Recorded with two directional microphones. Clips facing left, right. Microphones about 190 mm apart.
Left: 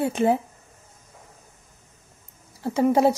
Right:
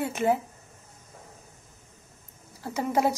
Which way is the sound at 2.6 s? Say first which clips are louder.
Left 7 dB; 30° left (ahead or behind).